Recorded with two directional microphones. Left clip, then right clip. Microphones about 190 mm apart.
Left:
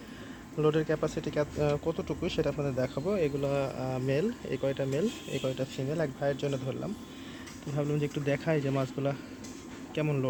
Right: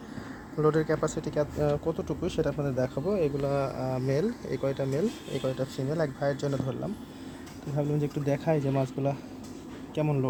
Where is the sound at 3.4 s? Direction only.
15° left (ahead or behind).